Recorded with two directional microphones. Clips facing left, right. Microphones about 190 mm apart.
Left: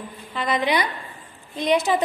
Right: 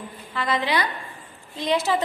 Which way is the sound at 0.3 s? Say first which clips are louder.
Left 2 dB; 20° left (ahead or behind).